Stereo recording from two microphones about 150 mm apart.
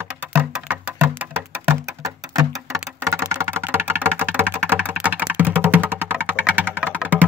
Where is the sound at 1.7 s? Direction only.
25° right (ahead or behind).